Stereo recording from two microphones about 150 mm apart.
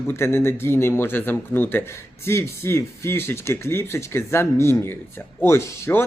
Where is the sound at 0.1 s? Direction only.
15° left (ahead or behind).